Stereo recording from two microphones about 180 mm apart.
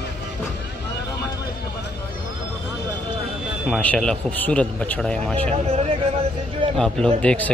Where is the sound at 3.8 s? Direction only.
5° left (ahead or behind).